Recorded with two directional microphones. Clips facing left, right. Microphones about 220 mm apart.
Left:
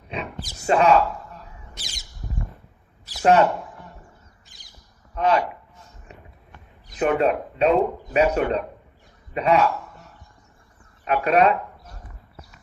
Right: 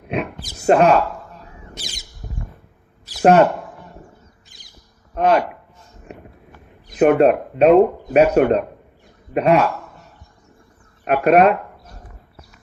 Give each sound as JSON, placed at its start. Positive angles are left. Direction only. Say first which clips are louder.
{"t": 0.1, "sound": "speech", "louder": "right 7 dB", "side_deg": -55}
{"t": 3.2, "sound": "speech", "louder": "right 5 dB", "side_deg": -50}
{"t": 5.1, "sound": "speech", "louder": "right 4 dB", "side_deg": -55}
{"t": 6.8, "sound": "speech", "louder": "right 7 dB", "side_deg": -60}
{"t": 11.0, "sound": "speech", "louder": "right 5 dB", "side_deg": -55}